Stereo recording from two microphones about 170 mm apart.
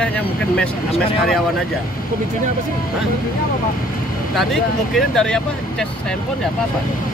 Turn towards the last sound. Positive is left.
turn(degrees=5)  # may be behind; listen again after turning